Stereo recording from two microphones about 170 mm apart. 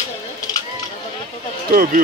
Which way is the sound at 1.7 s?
55° right (ahead or behind).